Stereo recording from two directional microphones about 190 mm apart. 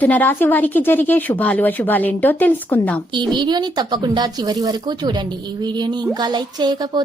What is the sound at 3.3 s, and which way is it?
Speech, 25° right (ahead or behind).